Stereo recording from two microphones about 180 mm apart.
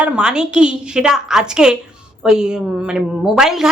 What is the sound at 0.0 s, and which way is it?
A woman's voice, 5° right (ahead or behind).